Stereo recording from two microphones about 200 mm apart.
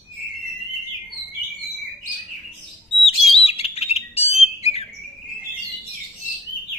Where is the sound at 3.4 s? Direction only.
30° left (ahead or behind).